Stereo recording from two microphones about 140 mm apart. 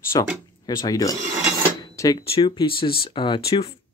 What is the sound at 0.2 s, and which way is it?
Speech, 30° left (ahead or behind).